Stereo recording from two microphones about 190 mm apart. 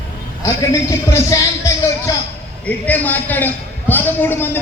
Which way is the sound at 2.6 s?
10° left (ahead or behind).